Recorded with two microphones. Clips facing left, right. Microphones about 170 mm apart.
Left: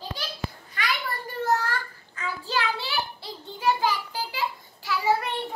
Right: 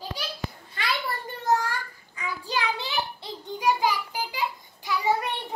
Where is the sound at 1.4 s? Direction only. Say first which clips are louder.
Even; 15° right (ahead or behind).